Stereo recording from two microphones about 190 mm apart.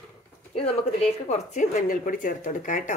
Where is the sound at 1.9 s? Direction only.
45° left (ahead or behind).